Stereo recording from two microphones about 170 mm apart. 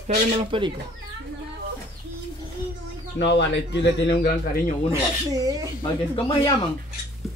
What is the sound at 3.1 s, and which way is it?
Speech, 90° left.